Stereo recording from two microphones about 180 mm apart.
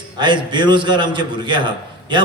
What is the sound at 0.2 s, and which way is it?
A man's voice, 25° right (ahead or behind).